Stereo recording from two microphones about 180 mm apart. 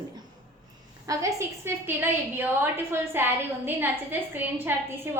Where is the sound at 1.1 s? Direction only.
20° right (ahead or behind).